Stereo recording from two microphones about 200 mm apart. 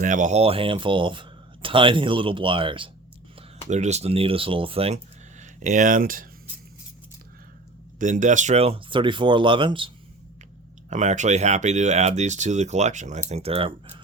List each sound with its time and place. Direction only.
0.0 s speech: 40° right (ahead or behind)
7.9 s speech: 40° right (ahead or behind); by 9.9 s 25° right (ahead or behind)
10.8 s speech: 35° right (ahead or behind)